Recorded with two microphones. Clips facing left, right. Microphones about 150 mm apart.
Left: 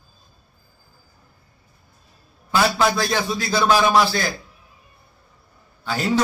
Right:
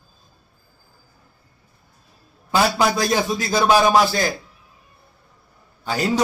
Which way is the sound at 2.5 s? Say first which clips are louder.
Right 1 dB; 15° right (ahead or behind).